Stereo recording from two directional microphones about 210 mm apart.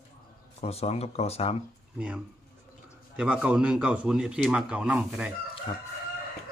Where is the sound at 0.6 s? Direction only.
30° left (ahead or behind).